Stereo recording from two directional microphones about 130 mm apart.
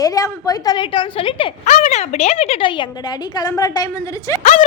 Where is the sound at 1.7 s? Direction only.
60° left (ahead or behind); by 4.4 s 30° left (ahead or behind).